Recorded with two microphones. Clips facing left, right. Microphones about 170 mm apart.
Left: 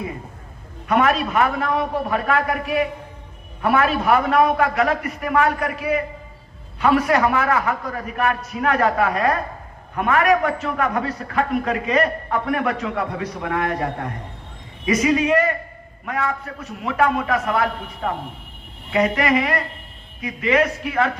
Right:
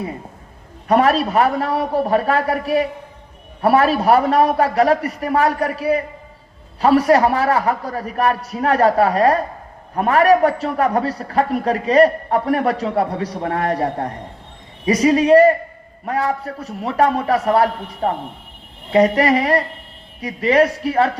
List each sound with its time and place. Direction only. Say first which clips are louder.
0.9 s a man's voice: right 4 dB; 35° right (ahead or behind)